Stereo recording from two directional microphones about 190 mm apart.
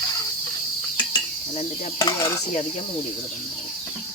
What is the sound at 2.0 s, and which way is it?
Cricket, 25° left (ahead or behind).